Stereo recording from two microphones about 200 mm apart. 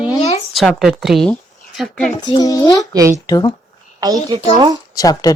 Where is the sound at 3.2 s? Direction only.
15° left (ahead or behind).